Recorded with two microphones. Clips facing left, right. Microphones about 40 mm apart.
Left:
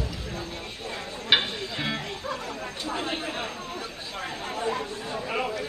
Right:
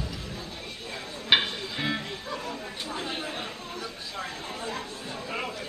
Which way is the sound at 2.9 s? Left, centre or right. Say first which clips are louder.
Left 4 dB; left.